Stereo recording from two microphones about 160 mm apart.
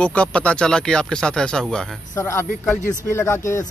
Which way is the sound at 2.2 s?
15° left (ahead or behind).